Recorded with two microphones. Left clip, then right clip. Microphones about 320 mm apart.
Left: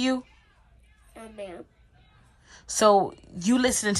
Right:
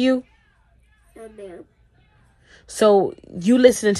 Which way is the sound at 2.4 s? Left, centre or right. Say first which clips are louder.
Right 4 dB; centre.